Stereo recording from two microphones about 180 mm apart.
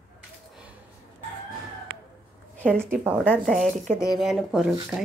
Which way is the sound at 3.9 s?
15° left (ahead or behind).